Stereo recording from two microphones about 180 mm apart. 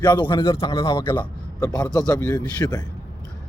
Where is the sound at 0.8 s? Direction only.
15° left (ahead or behind).